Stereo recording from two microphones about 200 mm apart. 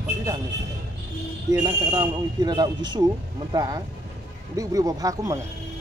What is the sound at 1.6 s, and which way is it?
Speech, 20° right (ahead or behind).